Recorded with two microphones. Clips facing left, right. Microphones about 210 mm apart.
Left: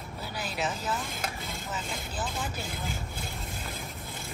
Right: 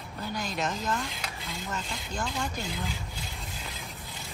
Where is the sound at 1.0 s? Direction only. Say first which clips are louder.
Left 2 dB; 50° left (ahead or behind).